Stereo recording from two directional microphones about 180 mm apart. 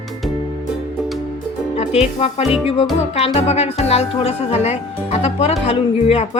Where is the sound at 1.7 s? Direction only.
35° left (ahead or behind).